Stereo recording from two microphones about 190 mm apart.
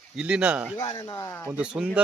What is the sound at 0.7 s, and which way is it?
Speech, 20° left (ahead or behind).